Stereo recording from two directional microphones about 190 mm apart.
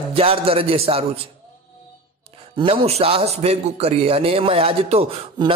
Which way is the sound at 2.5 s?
30° right (ahead or behind).